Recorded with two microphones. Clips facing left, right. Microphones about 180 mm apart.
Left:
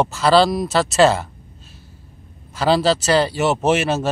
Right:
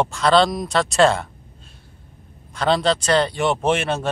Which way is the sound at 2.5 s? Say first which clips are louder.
Left 2 dB; 5° left (ahead or behind).